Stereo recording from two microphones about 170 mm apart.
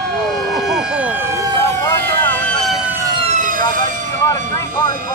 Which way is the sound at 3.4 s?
55° right (ahead or behind).